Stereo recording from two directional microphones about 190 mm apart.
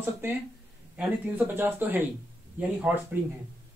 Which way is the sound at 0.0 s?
10° right (ahead or behind).